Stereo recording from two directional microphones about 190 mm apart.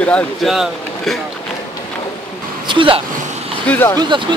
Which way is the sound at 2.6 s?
25° right (ahead or behind).